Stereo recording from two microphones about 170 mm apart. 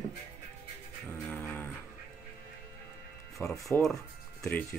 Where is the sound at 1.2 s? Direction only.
10° left (ahead or behind).